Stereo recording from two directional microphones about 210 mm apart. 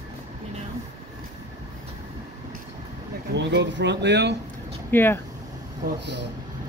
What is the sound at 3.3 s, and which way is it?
Speech, 60° right (ahead or behind).